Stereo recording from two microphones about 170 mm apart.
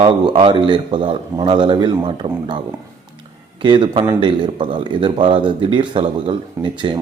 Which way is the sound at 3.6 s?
30° right (ahead or behind).